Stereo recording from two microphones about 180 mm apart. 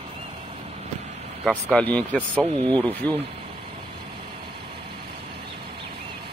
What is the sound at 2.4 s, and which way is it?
Speech, 40° right (ahead or behind).